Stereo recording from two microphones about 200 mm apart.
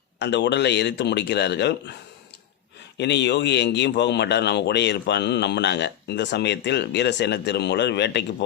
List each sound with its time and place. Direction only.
0.2 s a man's voice: 60° left (ahead or behind)
3.0 s a man's voice: 60° left (ahead or behind)